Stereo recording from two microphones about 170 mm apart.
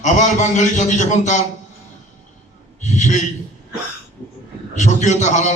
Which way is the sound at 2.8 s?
45° left (ahead or behind).